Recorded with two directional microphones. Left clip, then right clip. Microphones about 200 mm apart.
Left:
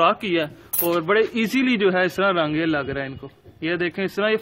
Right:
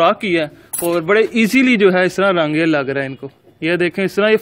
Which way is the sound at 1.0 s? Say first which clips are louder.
Right 8 dB; 20° right (ahead or behind).